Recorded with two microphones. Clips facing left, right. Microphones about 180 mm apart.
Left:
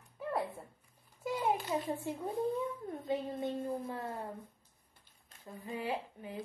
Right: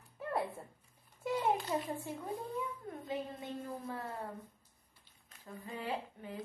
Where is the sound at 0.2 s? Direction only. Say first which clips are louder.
Left 1 dB; centre (ahead or behind).